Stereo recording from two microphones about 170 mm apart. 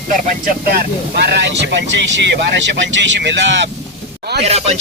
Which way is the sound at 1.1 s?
75° right (ahead or behind).